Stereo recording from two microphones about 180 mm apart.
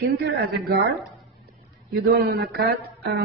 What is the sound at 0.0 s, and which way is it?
Speech, 60° right (ahead or behind).